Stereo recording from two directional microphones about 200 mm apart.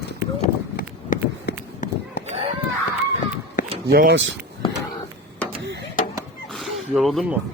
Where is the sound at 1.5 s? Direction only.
55° left (ahead or behind).